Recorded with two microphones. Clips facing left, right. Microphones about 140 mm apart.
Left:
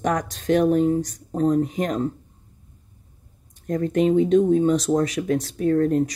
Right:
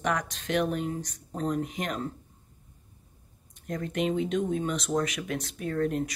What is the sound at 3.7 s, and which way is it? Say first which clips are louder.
Speech: left 9 dB; 35° left (ahead or behind).